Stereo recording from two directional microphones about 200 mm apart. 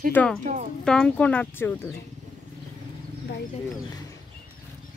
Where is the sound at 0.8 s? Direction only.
5° left (ahead or behind).